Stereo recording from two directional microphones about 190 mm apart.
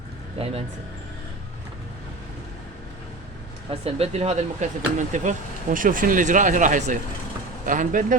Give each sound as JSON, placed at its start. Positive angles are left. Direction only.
{"t": 0.3, "sound": "speech", "side_deg": -30}
{"t": 3.7, "sound": "speech", "side_deg": -30}